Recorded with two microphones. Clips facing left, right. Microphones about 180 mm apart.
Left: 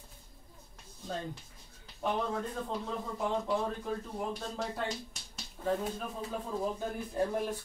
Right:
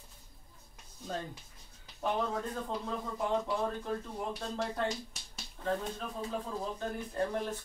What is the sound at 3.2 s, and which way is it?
Speech, centre (ahead or behind).